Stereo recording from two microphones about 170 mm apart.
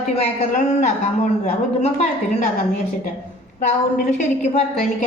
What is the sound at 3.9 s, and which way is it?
A woman's voice, 45° left (ahead or behind).